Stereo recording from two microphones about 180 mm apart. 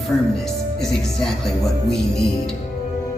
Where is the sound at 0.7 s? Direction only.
Centre (ahead or behind).